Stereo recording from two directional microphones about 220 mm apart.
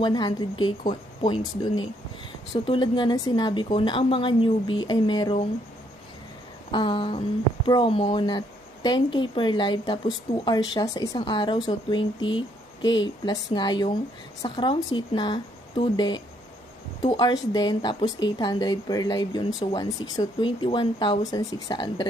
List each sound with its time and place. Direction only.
0.0 s speech: 20° left (ahead or behind)
6.7 s speech: 20° left (ahead or behind)